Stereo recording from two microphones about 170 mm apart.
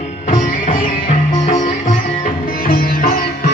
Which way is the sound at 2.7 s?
60° left (ahead or behind).